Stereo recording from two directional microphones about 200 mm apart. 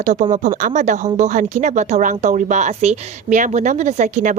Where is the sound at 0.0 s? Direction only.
35° right (ahead or behind).